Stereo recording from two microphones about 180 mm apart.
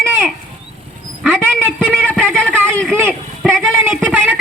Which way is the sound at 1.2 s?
10° right (ahead or behind).